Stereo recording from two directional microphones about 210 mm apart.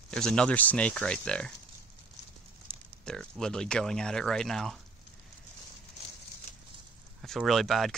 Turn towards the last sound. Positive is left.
turn(degrees=0)  # may be behind; listen again after turning